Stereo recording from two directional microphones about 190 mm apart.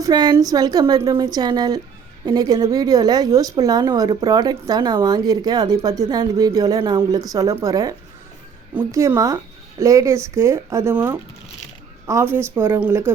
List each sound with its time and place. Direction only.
0.0 s speech: 20° right (ahead or behind)